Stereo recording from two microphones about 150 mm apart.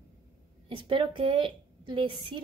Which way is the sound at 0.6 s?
35° right (ahead or behind).